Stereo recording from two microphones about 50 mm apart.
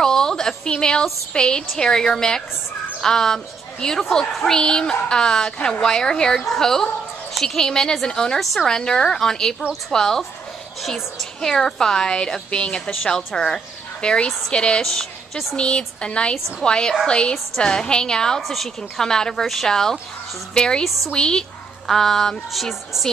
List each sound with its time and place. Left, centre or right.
0.0 s a sound: centre
1.3 s a woman's voice: centre
18.4 s a woman's voice: centre
18.8 s a woman's voice: centre